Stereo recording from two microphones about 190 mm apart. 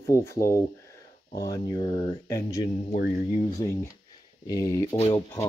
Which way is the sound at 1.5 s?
25° left (ahead or behind).